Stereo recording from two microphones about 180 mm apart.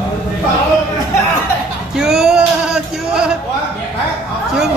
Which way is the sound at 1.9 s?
5° right (ahead or behind).